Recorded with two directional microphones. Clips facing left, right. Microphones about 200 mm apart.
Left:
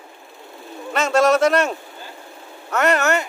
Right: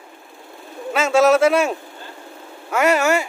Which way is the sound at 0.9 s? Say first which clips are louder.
Right 2 dB; 5° right (ahead or behind).